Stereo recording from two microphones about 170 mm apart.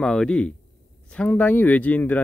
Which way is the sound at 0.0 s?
5° left (ahead or behind).